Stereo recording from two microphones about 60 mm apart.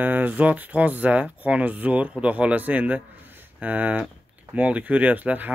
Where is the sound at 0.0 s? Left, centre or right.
Right.